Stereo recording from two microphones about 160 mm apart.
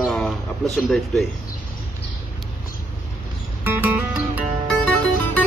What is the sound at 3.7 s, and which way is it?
Music, 10° right (ahead or behind).